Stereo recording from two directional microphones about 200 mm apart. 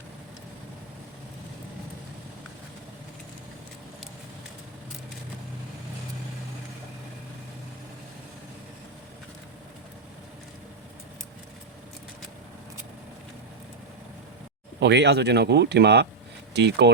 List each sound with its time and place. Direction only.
14.8 s speech: 60° right (ahead or behind)